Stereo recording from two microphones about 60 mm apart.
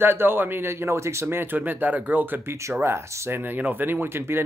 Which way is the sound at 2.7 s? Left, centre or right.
Right.